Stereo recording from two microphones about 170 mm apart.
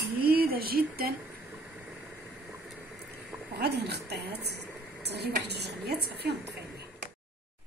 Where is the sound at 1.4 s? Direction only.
10° right (ahead or behind).